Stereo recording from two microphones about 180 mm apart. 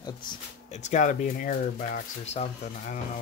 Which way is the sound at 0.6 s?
40° left (ahead or behind).